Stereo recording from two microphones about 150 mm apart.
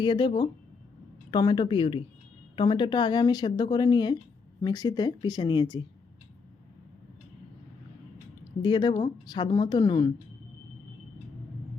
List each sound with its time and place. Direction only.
0.0 s speech: 30° left (ahead or behind)
8.6 s speech: 30° left (ahead or behind)